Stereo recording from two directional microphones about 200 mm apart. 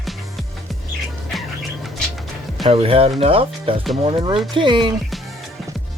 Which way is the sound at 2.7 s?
25° right (ahead or behind).